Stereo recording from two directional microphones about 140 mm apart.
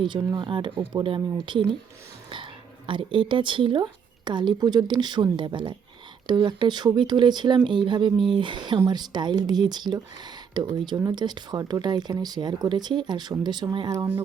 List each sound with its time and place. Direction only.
0.3 s speech: 35° right (ahead or behind)